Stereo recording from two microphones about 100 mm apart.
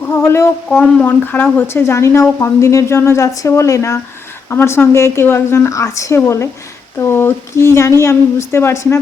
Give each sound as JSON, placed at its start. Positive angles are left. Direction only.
{"t": 0.1, "sound": "a woman's voice", "side_deg": 25}
{"t": 0.7, "sound": "a woman's voice", "side_deg": 10}